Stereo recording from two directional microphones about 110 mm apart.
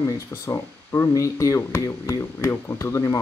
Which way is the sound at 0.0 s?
20° left (ahead or behind).